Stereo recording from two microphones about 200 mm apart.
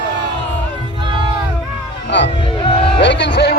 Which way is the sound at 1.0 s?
25° right (ahead or behind).